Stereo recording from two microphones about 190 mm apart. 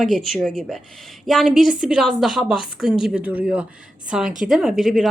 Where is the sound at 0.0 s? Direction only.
Centre (ahead or behind).